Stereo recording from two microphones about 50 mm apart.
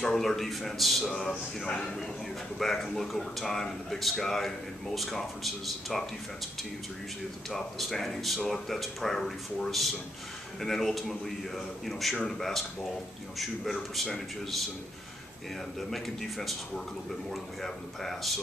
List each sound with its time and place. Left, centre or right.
0.0 s speech: centre
1.6 s speech: centre
2.6 s speech: centre
7.4 s speech: centre
13.9 s speech: centre
15.9 s speech: centre